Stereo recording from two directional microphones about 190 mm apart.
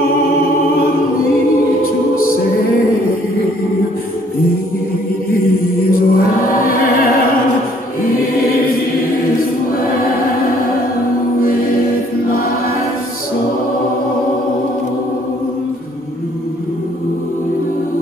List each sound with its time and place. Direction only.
5.9 s music: 50° left (ahead or behind)